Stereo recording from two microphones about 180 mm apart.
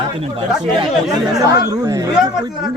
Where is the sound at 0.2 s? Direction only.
30° right (ahead or behind).